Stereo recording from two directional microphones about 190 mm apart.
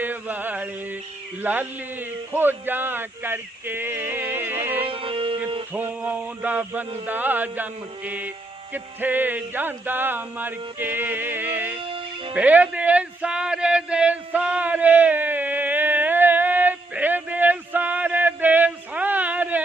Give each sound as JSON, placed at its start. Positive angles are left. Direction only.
{"t": 0.0, "sound": "a sound", "side_deg": -10}
{"t": 1.4, "sound": "a man's voice", "side_deg": -10}
{"t": 4.9, "sound": "music", "side_deg": -30}
{"t": 5.7, "sound": "a man's voice", "side_deg": -10}
{"t": 11.8, "sound": "music", "side_deg": -30}
{"t": 12.3, "sound": "music", "side_deg": -10}